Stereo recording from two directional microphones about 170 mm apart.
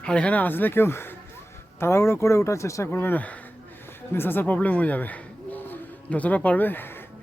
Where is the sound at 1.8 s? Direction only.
15° left (ahead or behind).